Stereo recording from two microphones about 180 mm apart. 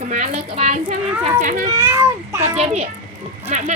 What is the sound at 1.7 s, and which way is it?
Speech, 15° right (ahead or behind).